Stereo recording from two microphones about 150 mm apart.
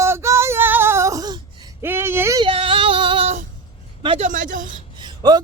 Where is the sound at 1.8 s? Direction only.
15° right (ahead or behind).